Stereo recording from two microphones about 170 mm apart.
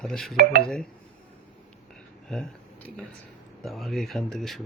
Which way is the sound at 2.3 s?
Centre (ahead or behind).